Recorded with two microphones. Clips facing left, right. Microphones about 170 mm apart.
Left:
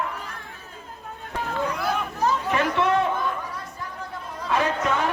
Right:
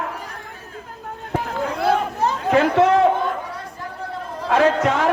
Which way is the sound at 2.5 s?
90° right.